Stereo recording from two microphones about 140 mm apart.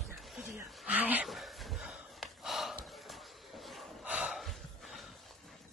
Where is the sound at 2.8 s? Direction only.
Centre (ahead or behind).